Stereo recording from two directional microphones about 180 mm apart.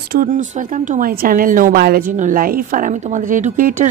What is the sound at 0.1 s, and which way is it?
A woman's voice, 50° right (ahead or behind).